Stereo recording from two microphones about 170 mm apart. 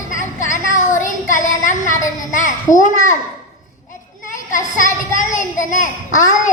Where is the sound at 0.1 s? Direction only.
50° left (ahead or behind).